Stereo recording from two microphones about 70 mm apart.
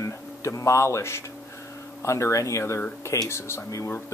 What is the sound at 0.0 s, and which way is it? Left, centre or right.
Speech, left.